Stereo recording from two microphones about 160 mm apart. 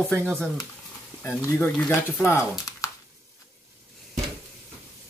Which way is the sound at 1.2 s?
15° left (ahead or behind).